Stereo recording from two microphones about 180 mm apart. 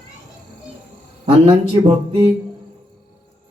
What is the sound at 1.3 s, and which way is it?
Speech, 30° right (ahead or behind).